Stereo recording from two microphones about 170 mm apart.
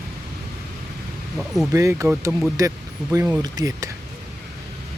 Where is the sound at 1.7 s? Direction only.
20° right (ahead or behind).